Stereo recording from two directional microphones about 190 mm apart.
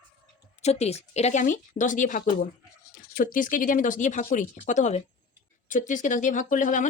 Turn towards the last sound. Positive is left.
turn(degrees=40)  # may be behind; listen again after turning